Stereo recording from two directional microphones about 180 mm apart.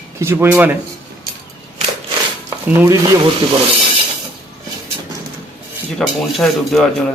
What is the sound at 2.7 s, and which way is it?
Speech, 10° right (ahead or behind).